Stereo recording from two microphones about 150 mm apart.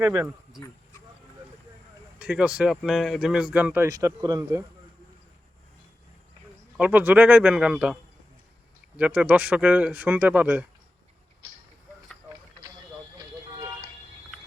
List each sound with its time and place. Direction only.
0.0 s speech: 10° right (ahead or behind)
2.1 s speech: 10° right (ahead or behind)
3.8 s speech: 25° right (ahead or behind)
6.7 s speech: 10° right (ahead or behind)
9.0 s speech: 10° right (ahead or behind)